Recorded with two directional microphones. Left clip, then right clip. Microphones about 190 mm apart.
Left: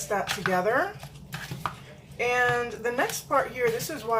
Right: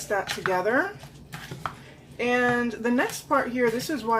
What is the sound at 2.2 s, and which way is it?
Speech, 30° right (ahead or behind).